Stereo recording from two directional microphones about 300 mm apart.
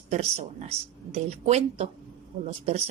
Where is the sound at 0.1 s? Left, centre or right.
Right.